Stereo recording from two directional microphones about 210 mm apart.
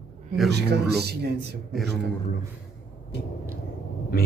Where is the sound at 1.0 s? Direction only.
50° right (ahead or behind).